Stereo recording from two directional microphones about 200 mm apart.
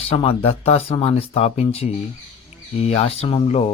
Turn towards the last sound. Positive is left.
turn(degrees=30)  # may be behind; listen again after turning